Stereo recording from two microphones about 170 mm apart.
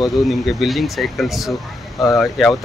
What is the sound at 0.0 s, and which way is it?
Speech, centre (ahead or behind).